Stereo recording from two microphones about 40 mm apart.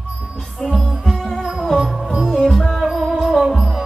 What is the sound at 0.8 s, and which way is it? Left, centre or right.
Music, centre.